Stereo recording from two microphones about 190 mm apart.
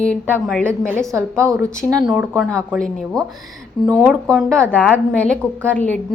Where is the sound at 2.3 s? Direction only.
5° left (ahead or behind).